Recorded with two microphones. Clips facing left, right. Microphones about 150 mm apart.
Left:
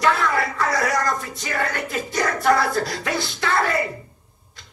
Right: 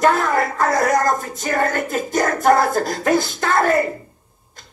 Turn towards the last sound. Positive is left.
turn(degrees=-45)  # may be behind; listen again after turning